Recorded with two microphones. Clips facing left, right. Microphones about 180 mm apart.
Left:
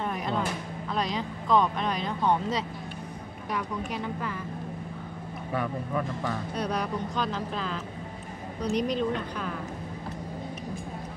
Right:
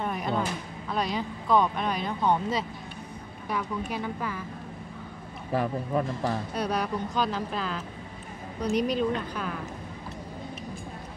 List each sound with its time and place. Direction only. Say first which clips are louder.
0.0 s a sound: right 1 dB; centre (ahead or behind)
0.8 s speech: right 1 dB; 5° right (ahead or behind)
5.5 s speech: right 3 dB; 35° right (ahead or behind)
6.5 s speech: right 1 dB; 5° right (ahead or behind)